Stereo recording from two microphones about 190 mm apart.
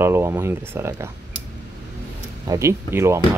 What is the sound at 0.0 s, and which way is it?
Speech, 15° right (ahead or behind).